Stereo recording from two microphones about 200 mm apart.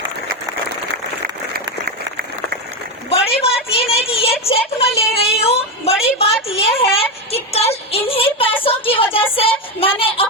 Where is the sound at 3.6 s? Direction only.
30° left (ahead or behind).